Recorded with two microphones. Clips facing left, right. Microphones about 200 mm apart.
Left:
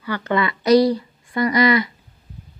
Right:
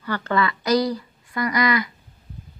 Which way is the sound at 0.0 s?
15° left (ahead or behind).